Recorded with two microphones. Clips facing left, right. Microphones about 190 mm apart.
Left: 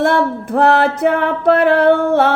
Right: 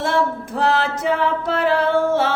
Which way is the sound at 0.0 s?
60° left (ahead or behind).